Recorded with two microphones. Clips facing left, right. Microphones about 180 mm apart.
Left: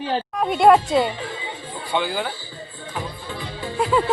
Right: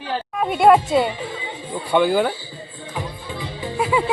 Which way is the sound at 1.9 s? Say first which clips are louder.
Right 7 dB; 55° right (ahead or behind).